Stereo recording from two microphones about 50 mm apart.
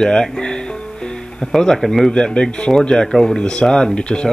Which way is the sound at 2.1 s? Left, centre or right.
Centre.